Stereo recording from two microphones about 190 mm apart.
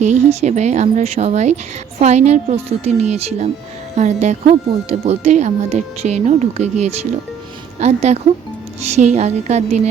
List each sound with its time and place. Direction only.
0.0 s a woman's voice: 35° right (ahead or behind)